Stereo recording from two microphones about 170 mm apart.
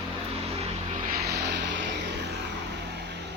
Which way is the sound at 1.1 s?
65° right (ahead or behind).